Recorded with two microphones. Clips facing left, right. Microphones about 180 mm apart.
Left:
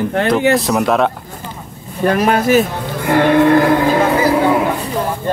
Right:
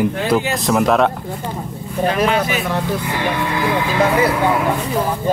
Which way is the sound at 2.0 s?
50° left (ahead or behind).